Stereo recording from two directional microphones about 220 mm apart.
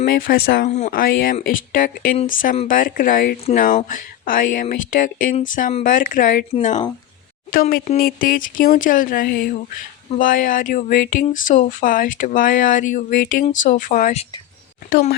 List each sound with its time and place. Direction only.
0.0 s speech: 40° left (ahead or behind)